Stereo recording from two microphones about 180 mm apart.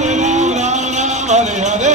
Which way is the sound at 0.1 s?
40° right (ahead or behind).